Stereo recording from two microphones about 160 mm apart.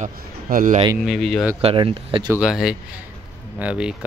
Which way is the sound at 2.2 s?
5° right (ahead or behind).